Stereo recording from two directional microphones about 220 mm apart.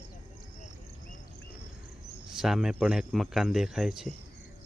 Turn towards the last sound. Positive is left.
turn(degrees=0)  # may be behind; listen again after turning